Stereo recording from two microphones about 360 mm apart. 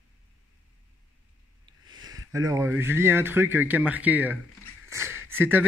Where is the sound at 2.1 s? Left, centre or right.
Centre.